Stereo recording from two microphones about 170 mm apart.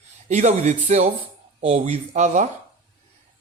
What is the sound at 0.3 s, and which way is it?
Speech, 45° right (ahead or behind).